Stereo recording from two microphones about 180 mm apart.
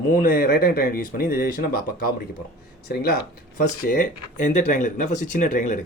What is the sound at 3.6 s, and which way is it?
Speech, 50° left (ahead or behind).